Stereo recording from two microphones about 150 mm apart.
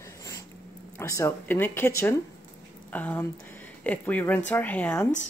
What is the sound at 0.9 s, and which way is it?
A woman's voice, 20° left (ahead or behind).